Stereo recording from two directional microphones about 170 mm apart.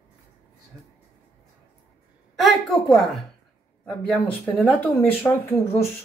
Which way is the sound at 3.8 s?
10° left (ahead or behind).